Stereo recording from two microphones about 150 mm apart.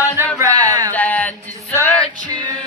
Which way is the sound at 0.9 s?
10° left (ahead or behind).